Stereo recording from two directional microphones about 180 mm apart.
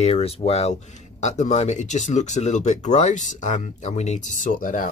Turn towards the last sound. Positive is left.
turn(degrees=50)  # may be behind; listen again after turning